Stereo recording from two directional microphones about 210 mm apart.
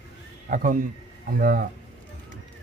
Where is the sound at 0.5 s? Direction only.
40° right (ahead or behind).